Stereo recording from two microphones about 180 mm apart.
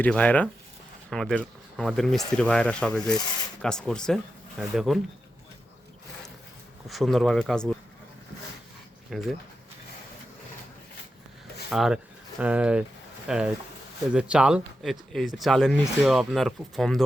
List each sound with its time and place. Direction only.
0.0 s speech: 5° left (ahead or behind)
6.8 s speech: centre (ahead or behind)
9.0 s speech: centre (ahead or behind)
11.7 s speech: centre (ahead or behind)